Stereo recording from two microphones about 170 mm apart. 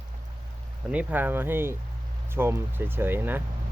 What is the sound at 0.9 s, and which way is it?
Speech, 10° right (ahead or behind).